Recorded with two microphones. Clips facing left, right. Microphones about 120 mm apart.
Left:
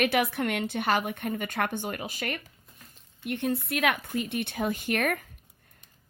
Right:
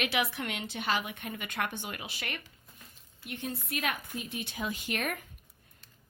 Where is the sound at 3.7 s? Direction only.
70° left (ahead or behind).